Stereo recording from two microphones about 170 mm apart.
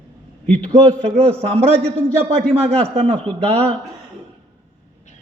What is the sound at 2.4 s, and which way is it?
Speech, 5° left (ahead or behind).